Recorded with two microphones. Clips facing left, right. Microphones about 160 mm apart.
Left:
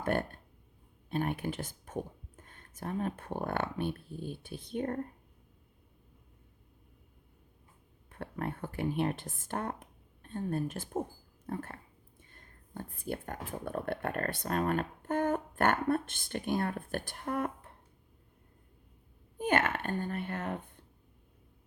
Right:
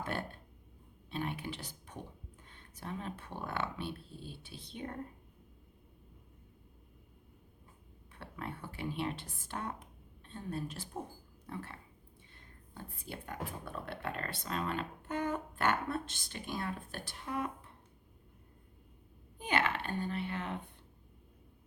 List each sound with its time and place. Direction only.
0.0 s speech: 50° left (ahead or behind)
8.1 s speech: 50° left (ahead or behind)
19.4 s speech: 50° left (ahead or behind)